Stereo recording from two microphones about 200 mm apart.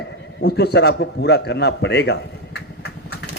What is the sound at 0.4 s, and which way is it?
A man's voice, 55° left (ahead or behind).